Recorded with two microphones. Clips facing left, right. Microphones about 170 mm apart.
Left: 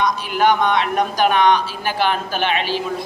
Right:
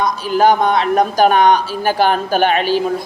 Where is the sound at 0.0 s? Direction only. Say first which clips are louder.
Right 4 dB; 35° right (ahead or behind).